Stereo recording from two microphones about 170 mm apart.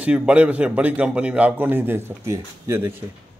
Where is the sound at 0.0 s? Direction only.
5° right (ahead or behind).